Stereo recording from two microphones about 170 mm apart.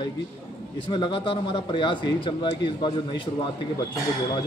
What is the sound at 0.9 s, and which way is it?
Speech, 30° left (ahead or behind).